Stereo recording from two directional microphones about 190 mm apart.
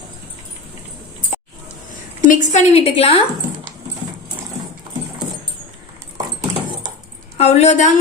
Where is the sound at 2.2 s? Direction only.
40° left (ahead or behind).